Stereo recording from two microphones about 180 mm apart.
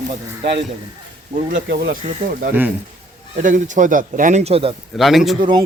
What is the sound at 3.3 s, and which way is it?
Speech, 45° right (ahead or behind).